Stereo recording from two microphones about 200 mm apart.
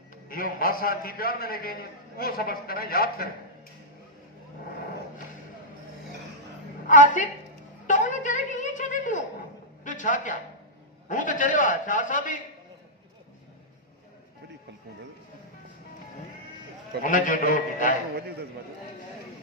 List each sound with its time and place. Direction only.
0.3 s a man's voice: 45° left (ahead or behind)
6.8 s a woman's voice: 40° left (ahead or behind)
7.9 s music: 40° left (ahead or behind)
9.8 s a sound: 40° left (ahead or behind)
11.1 s a man's voice: 40° left (ahead or behind)
17.0 s a man's voice: 40° left (ahead or behind)